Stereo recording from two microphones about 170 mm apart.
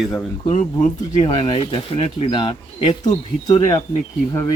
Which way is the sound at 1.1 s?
35° left (ahead or behind).